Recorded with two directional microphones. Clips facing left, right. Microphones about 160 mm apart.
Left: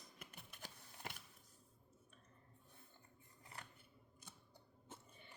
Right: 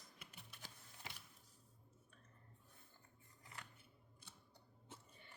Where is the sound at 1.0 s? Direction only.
50° left (ahead or behind).